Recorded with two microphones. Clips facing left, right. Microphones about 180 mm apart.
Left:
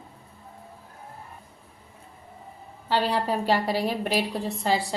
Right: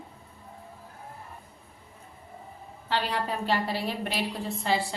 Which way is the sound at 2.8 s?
35° left (ahead or behind).